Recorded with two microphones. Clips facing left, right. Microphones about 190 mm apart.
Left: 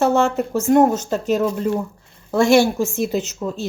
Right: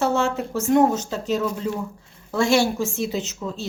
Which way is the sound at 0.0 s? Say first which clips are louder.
Left 5 dB; 55° left (ahead or behind).